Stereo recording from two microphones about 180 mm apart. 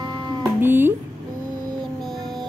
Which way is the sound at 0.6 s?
10° right (ahead or behind).